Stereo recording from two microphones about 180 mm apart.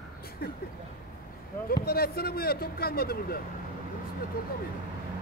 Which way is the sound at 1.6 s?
60° left (ahead or behind).